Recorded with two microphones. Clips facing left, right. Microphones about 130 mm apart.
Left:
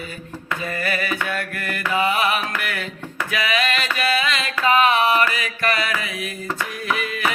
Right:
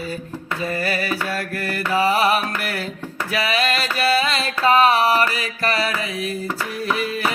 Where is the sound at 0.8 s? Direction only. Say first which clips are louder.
Left 1 dB; 35° right (ahead or behind).